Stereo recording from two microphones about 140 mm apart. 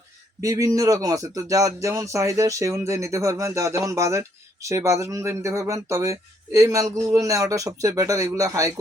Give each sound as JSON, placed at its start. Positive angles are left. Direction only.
{"t": 0.4, "sound": "speech", "side_deg": -25}